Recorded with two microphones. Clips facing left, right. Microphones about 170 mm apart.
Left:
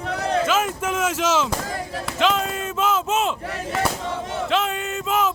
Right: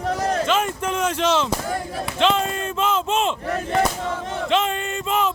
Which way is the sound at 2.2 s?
Centre (ahead or behind).